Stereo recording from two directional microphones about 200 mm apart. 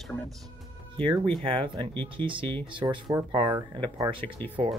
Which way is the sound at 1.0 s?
25° right (ahead or behind).